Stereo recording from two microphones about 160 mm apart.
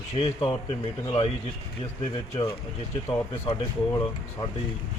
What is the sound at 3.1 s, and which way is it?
Speech, 15° left (ahead or behind).